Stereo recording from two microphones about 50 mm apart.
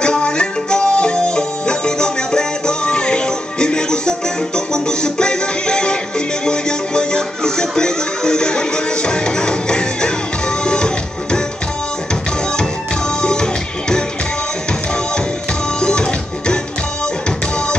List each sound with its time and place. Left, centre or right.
0.0 s music: centre
13.2 s music: centre
15.8 s music: centre